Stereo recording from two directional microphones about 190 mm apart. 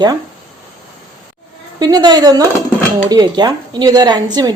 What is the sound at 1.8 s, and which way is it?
A woman's voice, 20° right (ahead or behind).